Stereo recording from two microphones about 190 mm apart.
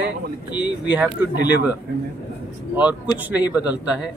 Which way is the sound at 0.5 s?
25° left (ahead or behind).